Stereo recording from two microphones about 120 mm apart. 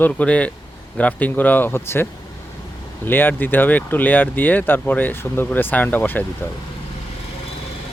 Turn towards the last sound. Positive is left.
turn(degrees=15)  # may be behind; listen again after turning